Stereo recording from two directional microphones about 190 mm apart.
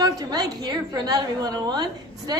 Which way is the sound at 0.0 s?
20° right (ahead or behind).